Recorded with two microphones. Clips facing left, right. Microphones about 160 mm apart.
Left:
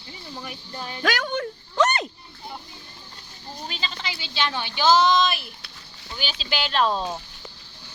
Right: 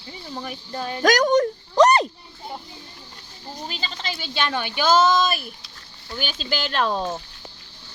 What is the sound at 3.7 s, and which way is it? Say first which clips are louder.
Speech: right 1 dB; 40° right (ahead or behind).